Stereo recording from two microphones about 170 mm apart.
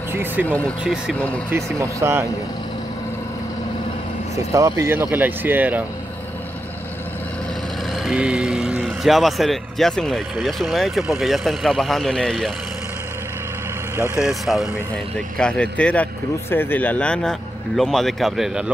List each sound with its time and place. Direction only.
0.1 s speech: 15° right (ahead or behind)
0.5 s speech: 10° left (ahead or behind)
1.5 s speech: 15° right (ahead or behind)
4.5 s speech: 20° right (ahead or behind)
7.9 s speech: 5° right (ahead or behind)
14.2 s speech: centre (ahead or behind)